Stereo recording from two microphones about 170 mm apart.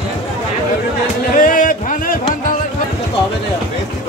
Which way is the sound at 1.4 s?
50° left (ahead or behind).